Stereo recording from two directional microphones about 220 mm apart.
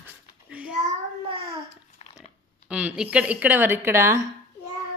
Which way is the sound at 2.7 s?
5° right (ahead or behind).